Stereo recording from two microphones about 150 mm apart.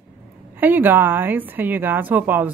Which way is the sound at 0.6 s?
10° right (ahead or behind).